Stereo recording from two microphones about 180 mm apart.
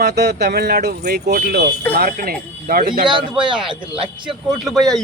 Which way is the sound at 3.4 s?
25° right (ahead or behind).